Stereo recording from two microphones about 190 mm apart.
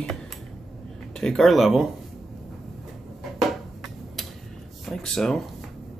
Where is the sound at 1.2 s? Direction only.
Centre (ahead or behind).